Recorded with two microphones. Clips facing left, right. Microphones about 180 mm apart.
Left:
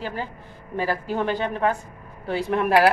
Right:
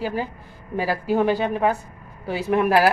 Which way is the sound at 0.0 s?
10° right (ahead or behind).